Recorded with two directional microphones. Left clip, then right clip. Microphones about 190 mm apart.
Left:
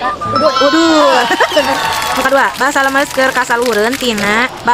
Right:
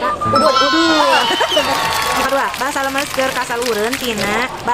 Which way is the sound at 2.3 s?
35° left (ahead or behind).